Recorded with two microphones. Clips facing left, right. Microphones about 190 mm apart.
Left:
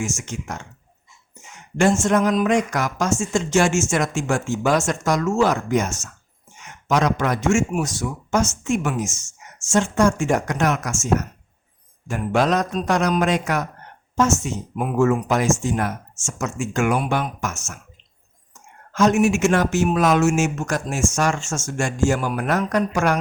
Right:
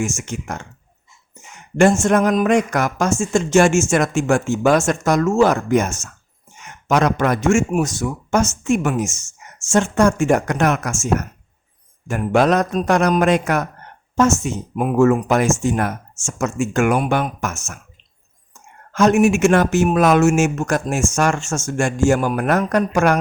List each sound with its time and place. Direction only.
0.0 s speech: 60° right (ahead or behind)
1.7 s speech: 55° right (ahead or behind)
18.9 s speech: 60° right (ahead or behind)